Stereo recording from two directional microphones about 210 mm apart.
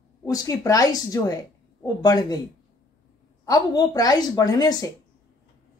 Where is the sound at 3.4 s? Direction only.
20° left (ahead or behind).